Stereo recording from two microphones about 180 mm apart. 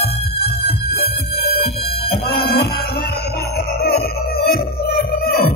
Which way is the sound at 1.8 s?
30° left (ahead or behind).